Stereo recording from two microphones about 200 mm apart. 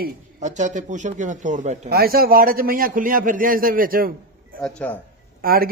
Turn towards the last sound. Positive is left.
turn(degrees=-45)  # may be behind; listen again after turning